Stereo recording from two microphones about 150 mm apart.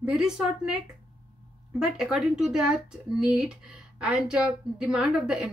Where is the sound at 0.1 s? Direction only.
5° right (ahead or behind).